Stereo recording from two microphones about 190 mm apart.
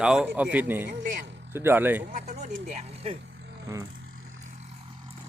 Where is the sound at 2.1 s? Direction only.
40° right (ahead or behind).